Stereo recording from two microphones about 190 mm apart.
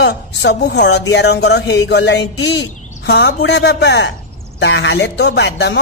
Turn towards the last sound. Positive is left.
turn(degrees=65)  # may be behind; listen again after turning